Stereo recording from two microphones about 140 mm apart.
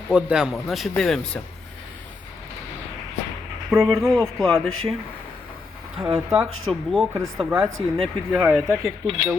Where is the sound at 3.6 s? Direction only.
5° left (ahead or behind).